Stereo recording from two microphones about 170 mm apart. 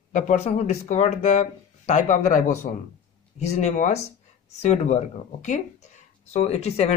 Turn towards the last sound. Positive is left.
turn(degrees=40)  # may be behind; listen again after turning